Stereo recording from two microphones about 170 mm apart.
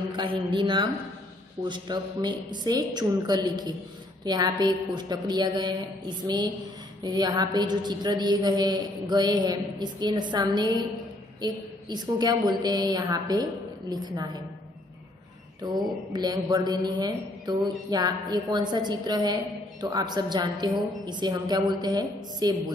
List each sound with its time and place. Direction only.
0.1 s a woman's voice: 30° right (ahead or behind)
15.6 s a woman's voice: 25° right (ahead or behind)